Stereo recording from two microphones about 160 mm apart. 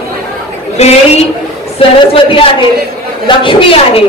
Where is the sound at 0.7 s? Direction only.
40° left (ahead or behind).